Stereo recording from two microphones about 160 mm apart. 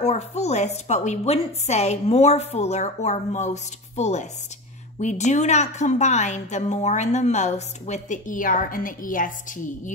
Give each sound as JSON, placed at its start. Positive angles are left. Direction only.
{"t": 0.0, "sound": "a woman's voice", "side_deg": 40}